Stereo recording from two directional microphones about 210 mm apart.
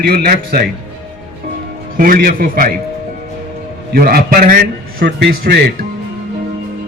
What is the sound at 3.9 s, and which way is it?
A man's voice, 45° right (ahead or behind).